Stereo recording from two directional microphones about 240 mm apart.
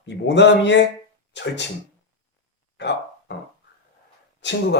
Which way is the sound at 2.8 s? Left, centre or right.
Left.